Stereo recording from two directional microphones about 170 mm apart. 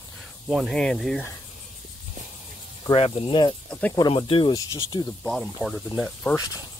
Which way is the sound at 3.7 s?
10° left (ahead or behind).